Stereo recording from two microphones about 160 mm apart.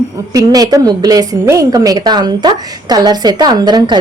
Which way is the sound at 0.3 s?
25° right (ahead or behind).